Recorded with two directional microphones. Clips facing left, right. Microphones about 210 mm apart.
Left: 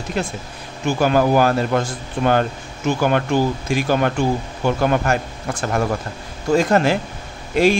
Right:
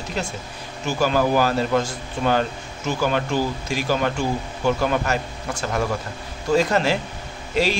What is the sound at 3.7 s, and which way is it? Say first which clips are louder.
A man's voice: left 4 dB; 55° left (ahead or behind).